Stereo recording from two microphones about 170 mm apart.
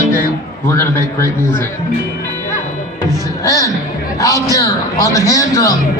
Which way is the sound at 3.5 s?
20° left (ahead or behind).